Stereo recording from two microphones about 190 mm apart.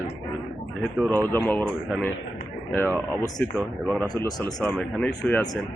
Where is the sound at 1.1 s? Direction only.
10° left (ahead or behind).